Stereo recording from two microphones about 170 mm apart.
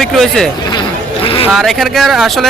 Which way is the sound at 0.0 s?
Centre (ahead or behind).